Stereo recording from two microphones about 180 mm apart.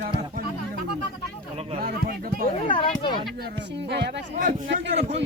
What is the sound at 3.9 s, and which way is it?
Speech, 65° right (ahead or behind).